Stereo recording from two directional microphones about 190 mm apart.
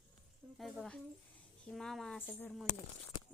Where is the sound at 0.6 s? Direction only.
Centre (ahead or behind).